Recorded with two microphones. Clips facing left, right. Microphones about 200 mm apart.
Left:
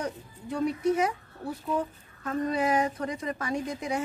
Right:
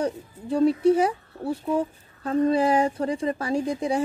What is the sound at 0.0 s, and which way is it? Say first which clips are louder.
Speech: right 7 dB; 30° right (ahead or behind).